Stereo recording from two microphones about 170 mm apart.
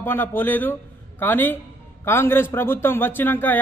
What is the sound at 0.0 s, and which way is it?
Speech, 10° left (ahead or behind).